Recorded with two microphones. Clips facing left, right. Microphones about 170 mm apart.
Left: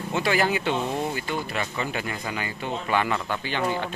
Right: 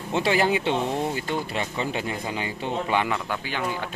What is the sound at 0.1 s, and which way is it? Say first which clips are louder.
Speech: right 2 dB; 25° right (ahead or behind).